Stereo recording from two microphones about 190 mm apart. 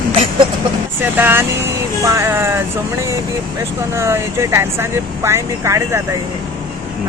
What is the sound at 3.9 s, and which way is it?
Speech, 15° right (ahead or behind).